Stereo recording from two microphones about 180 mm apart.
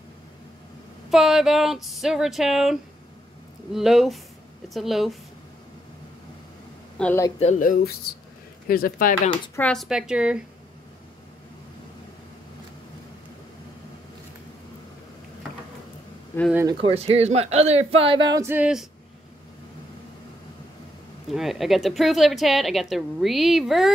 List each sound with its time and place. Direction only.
1.1 s speech: centre (ahead or behind)
7.0 s speech: 10° left (ahead or behind)
7.3 s speech: 40° left (ahead or behind)
9.6 s speech: 5° left (ahead or behind)
16.6 s speech: 35° right (ahead or behind); by 18.9 s 5° right (ahead or behind)
21.3 s speech: centre (ahead or behind)